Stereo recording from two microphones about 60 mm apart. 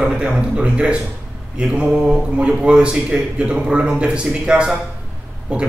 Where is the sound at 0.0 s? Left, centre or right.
Centre.